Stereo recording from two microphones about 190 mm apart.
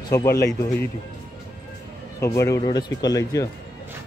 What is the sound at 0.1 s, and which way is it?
Speech, 15° left (ahead or behind).